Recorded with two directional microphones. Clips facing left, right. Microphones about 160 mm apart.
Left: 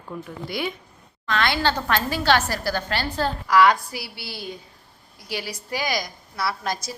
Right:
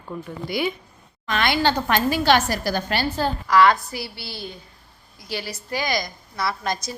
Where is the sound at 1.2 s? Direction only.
15° right (ahead or behind).